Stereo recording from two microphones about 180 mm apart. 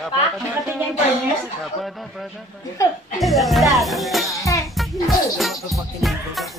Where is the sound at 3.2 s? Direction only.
Centre (ahead or behind).